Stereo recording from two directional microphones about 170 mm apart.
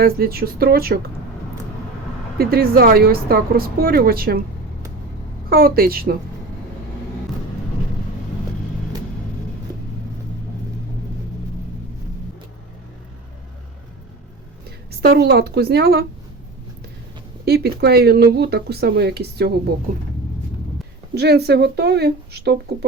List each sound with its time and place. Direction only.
0.0 s a woman's voice: 60° right (ahead or behind)
2.4 s a woman's voice: 65° right (ahead or behind)
5.5 s a woman's voice: 60° right (ahead or behind)
15.0 s speech: 65° right (ahead or behind)
17.4 s speech: 70° right (ahead or behind)
21.2 s speech: 75° right (ahead or behind)